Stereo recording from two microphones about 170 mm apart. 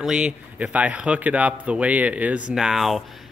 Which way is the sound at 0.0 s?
5° right (ahead or behind).